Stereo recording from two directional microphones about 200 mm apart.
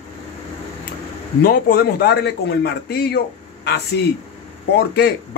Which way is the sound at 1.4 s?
50° left (ahead or behind).